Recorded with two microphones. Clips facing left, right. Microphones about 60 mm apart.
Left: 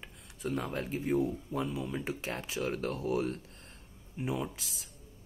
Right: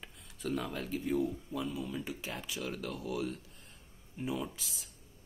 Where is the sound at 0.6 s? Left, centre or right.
Left.